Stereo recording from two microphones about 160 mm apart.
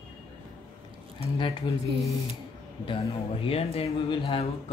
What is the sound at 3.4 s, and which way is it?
Speech, 35° left (ahead or behind).